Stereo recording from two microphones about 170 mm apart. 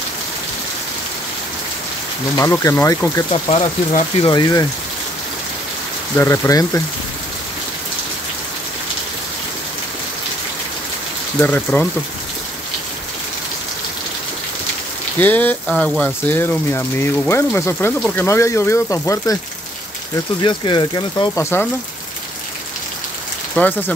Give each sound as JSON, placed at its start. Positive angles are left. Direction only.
{"t": 2.3, "sound": "speech", "side_deg": 20}
{"t": 3.3, "sound": "speech", "side_deg": 35}
{"t": 6.1, "sound": "speech", "side_deg": 15}
{"t": 11.3, "sound": "speech", "side_deg": 10}
{"t": 15.1, "sound": "speech", "side_deg": 10}
{"t": 20.4, "sound": "speech", "side_deg": 25}
{"t": 23.5, "sound": "speech", "side_deg": 10}